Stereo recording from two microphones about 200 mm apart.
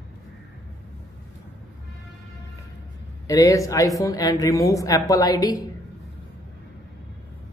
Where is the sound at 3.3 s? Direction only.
15° left (ahead or behind).